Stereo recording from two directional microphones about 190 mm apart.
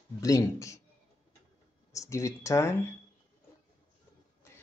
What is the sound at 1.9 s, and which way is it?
Speech, 15° left (ahead or behind).